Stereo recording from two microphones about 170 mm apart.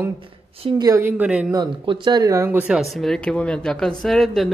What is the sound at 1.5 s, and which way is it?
Speech, 25° right (ahead or behind).